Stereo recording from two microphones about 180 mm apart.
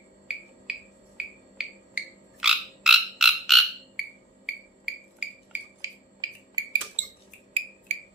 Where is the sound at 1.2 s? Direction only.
5° right (ahead or behind).